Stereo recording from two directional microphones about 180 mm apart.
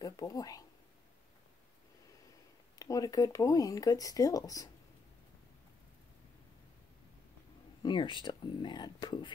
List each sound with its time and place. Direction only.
0.0 s speech: 20° left (ahead or behind)
2.8 s speech: 20° left (ahead or behind)
7.8 s speech: 25° left (ahead or behind)